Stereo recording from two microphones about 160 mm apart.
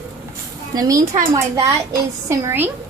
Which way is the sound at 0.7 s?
20° right (ahead or behind).